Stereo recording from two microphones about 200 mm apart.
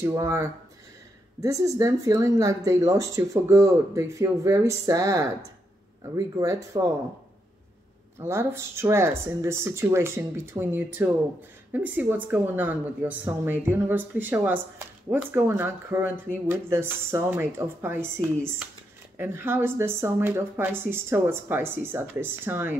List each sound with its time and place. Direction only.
0.0 s speech: 15° right (ahead or behind)
8.2 s speech: 15° right (ahead or behind)